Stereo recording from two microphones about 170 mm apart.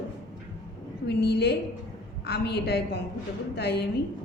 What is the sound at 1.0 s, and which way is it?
A woman's voice, 75° left (ahead or behind).